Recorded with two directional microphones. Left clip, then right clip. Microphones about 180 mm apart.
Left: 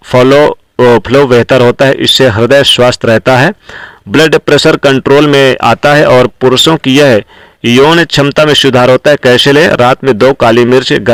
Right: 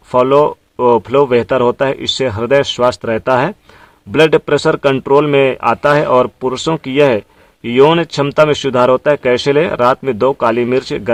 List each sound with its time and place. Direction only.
0.1 s speech: 30° left (ahead or behind)
5.6 s speech: 40° left (ahead or behind)